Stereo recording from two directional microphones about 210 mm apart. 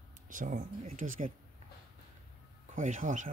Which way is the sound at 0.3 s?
40° right (ahead or behind).